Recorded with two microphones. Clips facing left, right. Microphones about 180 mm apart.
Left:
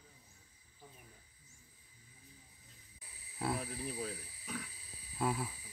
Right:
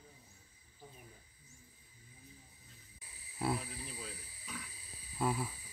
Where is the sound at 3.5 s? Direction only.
55° left (ahead or behind).